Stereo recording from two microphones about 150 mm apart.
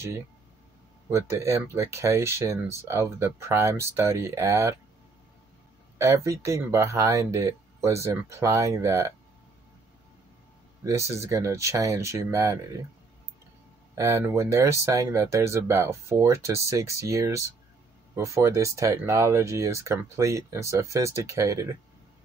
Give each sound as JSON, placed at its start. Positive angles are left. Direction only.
{"t": 1.1, "sound": "speech", "side_deg": -20}
{"t": 5.9, "sound": "speech", "side_deg": -20}
{"t": 10.8, "sound": "speech", "side_deg": -20}
{"t": 13.9, "sound": "speech", "side_deg": -20}